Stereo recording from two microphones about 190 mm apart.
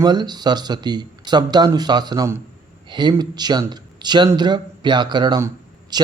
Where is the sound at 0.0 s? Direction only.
20° right (ahead or behind).